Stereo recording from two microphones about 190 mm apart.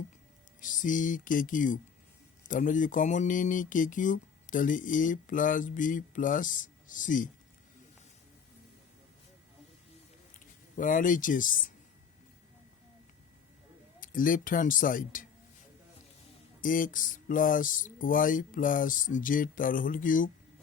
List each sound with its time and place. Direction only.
0.6 s speech: 45° left (ahead or behind)
10.8 s speech: 45° left (ahead or behind)
14.0 s speech: 45° left (ahead or behind)
16.6 s speech: 45° left (ahead or behind)